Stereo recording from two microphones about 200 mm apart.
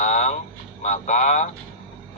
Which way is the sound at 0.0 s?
40° left (ahead or behind).